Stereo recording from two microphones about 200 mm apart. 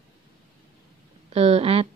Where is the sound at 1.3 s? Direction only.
30° right (ahead or behind).